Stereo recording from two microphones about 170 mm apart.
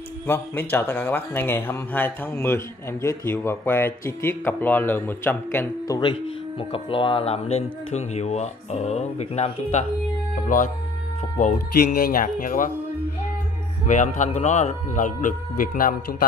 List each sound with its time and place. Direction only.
0.3 s speech: 10° left (ahead or behind)
5.9 s speech: 30° left (ahead or behind)
11.3 s a man's voice: 50° left (ahead or behind)
13.8 s a man's voice: 45° left (ahead or behind)